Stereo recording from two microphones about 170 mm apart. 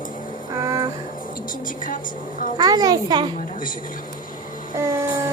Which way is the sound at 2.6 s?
25° right (ahead or behind).